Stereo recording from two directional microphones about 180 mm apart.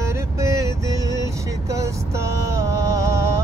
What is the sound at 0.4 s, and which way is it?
Vehicle, 15° right (ahead or behind).